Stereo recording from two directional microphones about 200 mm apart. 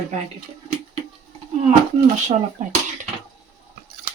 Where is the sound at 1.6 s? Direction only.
35° right (ahead or behind).